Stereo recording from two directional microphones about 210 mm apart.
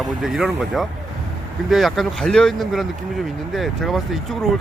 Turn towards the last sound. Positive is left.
turn(degrees=0)  # may be behind; listen again after turning